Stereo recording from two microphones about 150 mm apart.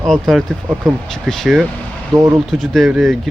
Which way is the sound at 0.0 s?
Centre (ahead or behind).